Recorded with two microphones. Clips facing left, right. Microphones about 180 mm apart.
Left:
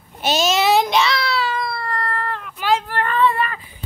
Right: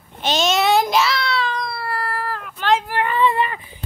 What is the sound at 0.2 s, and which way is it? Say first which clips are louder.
Child singing: left 1 dB; 5° left (ahead or behind).